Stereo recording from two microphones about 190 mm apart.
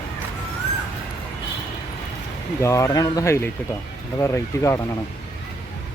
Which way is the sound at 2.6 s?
15° left (ahead or behind).